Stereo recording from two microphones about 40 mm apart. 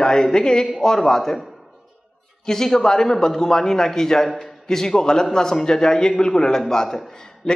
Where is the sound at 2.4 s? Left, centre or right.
Centre.